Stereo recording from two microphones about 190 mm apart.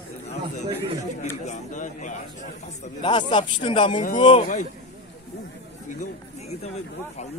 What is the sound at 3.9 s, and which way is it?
Speech, 40° left (ahead or behind).